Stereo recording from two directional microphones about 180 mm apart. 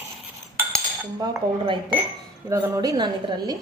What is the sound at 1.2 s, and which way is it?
A woman's voice, 25° right (ahead or behind).